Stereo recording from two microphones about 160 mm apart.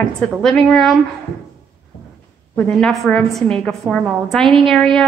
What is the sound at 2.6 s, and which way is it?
A woman's voice, 5° left (ahead or behind).